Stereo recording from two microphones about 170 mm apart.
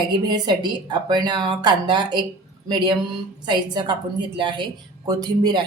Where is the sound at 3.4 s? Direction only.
25° right (ahead or behind).